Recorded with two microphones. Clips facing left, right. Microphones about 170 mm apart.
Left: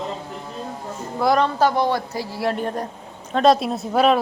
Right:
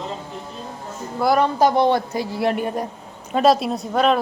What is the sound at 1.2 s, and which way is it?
Speech, 5° right (ahead or behind).